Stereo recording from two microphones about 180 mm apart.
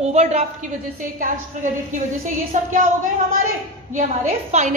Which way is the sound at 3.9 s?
40° right (ahead or behind).